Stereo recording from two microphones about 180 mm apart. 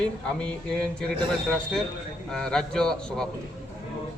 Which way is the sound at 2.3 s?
5° left (ahead or behind).